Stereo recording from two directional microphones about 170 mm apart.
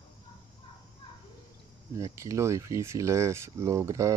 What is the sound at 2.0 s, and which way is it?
Speech, 20° right (ahead or behind).